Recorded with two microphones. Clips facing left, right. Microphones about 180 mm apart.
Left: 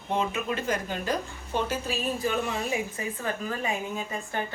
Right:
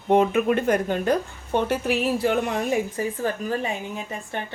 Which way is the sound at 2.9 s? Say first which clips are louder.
Right 6 dB; 35° right (ahead or behind).